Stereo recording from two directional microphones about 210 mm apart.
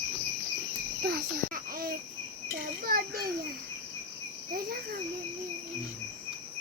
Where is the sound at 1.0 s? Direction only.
45° right (ahead or behind).